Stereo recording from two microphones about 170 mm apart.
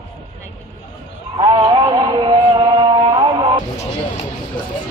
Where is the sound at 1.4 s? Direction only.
25° right (ahead or behind).